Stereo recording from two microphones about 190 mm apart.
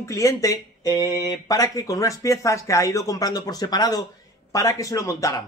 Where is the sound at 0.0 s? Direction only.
15° left (ahead or behind).